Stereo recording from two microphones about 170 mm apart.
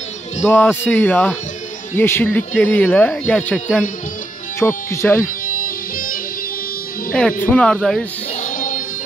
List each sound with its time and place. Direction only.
0.5 s speech: 10° left (ahead or behind)
5.5 s music: 55° left (ahead or behind)
7.1 s speech: 5° left (ahead or behind)
8.4 s music: 50° left (ahead or behind)